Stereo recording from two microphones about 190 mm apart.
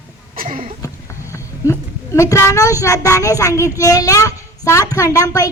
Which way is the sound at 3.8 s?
15° left (ahead or behind).